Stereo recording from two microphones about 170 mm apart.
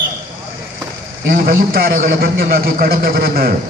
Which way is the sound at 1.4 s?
65° right (ahead or behind).